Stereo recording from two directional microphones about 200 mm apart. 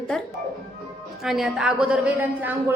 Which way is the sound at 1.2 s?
Centre (ahead or behind).